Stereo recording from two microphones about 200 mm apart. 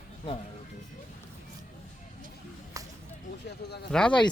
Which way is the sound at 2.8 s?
15° right (ahead or behind).